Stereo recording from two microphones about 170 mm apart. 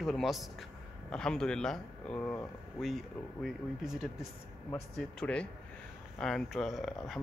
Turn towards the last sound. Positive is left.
turn(degrees=0)  # may be behind; listen again after turning